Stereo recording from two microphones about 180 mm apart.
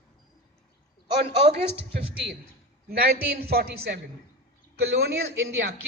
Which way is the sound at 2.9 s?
55° right (ahead or behind).